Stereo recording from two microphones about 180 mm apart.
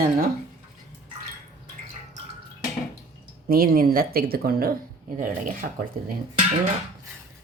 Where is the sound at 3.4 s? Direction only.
55° right (ahead or behind).